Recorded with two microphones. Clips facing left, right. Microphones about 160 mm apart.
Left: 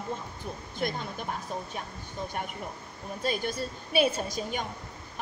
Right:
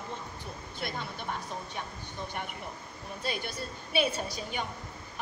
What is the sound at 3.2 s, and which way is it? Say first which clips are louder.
A woman's voice: left 5 dB; 45° left (ahead or behind).